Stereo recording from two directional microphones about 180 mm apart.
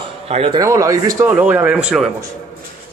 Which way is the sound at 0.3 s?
30° right (ahead or behind).